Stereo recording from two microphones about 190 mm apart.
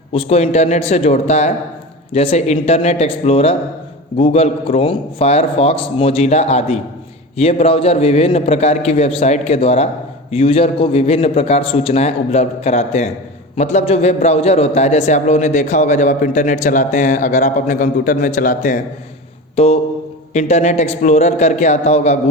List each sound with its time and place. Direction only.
0.1 s a man's voice: 30° left (ahead or behind)
19.5 s a man's voice: 35° left (ahead or behind)